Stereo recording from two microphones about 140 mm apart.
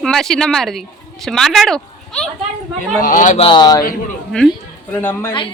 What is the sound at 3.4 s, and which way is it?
Speech, 30° left (ahead or behind).